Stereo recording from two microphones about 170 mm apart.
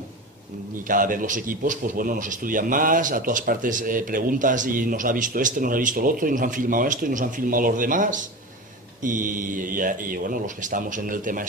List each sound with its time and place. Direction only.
0.8 s a man's voice: 55° right (ahead or behind)